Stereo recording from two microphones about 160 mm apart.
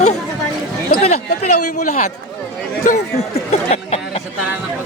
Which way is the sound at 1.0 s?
50° left (ahead or behind).